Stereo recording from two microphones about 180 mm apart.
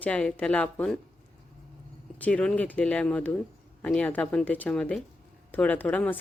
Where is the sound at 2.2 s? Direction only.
5° left (ahead or behind).